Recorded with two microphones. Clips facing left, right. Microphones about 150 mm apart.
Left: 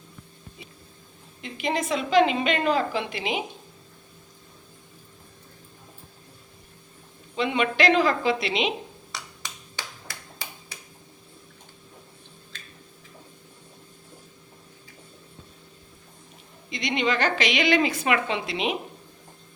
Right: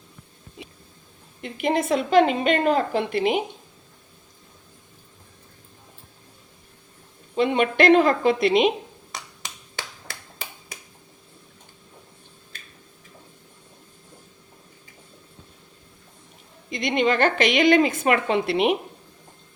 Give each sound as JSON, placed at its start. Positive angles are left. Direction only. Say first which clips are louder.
{"t": 1.4, "sound": "a woman's voice", "louder": "right 4 dB", "side_deg": -55}
{"t": 7.3, "sound": "a woman's voice", "louder": "right 4 dB", "side_deg": -50}
{"t": 16.6, "sound": "a woman's voice", "louder": "right 4 dB", "side_deg": -50}